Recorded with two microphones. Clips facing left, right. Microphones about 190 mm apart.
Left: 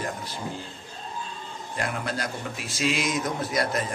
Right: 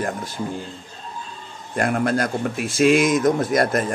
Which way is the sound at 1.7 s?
50° right (ahead or behind).